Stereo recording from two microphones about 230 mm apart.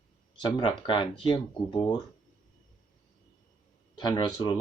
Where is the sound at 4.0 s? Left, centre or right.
Centre.